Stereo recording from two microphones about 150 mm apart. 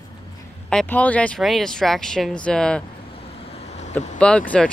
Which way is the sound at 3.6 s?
45° left (ahead or behind).